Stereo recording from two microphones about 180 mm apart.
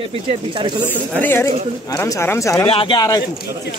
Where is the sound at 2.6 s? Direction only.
30° left (ahead or behind).